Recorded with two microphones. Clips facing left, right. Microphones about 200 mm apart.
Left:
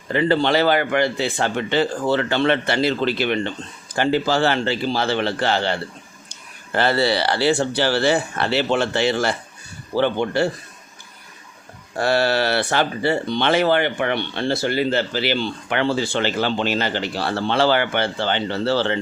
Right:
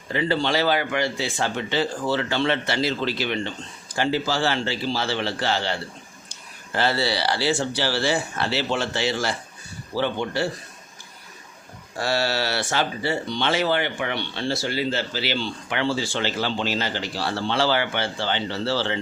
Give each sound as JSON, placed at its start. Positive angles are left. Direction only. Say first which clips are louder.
{"t": 0.1, "sound": "speech", "louder": "left 5 dB", "side_deg": 55}
{"t": 6.7, "sound": "speech", "louder": "left 5 dB", "side_deg": 55}
{"t": 11.9, "sound": "speech", "louder": "left 5 dB", "side_deg": 55}